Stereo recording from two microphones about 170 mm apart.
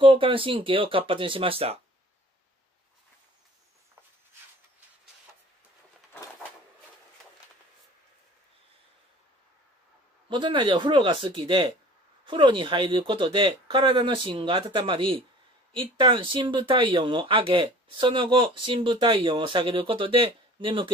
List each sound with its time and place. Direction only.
0.0 s speech: 30° right (ahead or behind)
10.3 s speech: 30° right (ahead or behind)